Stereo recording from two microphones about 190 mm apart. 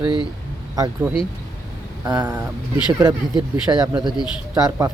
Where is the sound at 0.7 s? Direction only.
20° right (ahead or behind).